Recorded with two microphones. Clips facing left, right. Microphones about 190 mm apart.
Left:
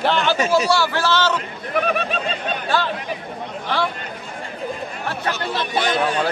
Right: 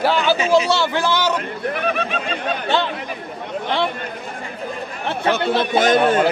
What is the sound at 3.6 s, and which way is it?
Speech, 20° right (ahead or behind).